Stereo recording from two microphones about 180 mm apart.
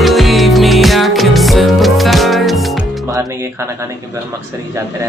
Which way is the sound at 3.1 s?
15° right (ahead or behind).